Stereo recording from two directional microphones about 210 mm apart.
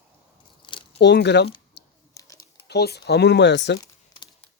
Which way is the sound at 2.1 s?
15° left (ahead or behind).